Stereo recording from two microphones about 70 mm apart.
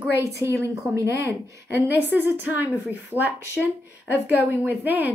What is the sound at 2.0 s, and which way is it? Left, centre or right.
Speech, right.